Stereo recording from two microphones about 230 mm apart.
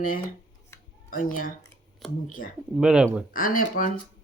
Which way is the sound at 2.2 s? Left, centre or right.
Left.